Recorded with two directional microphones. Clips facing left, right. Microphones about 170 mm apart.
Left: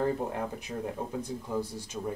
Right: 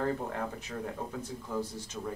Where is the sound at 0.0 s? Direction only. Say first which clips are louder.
Left 3 dB; 15° left (ahead or behind).